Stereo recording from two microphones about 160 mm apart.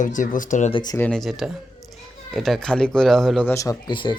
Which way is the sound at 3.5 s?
20° left (ahead or behind).